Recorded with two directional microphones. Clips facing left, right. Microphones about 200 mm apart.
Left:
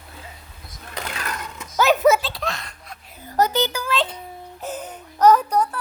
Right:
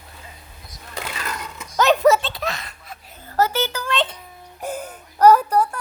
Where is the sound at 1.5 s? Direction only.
5° left (ahead or behind).